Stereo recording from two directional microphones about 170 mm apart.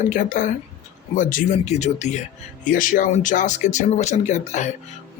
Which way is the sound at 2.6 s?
55° left (ahead or behind).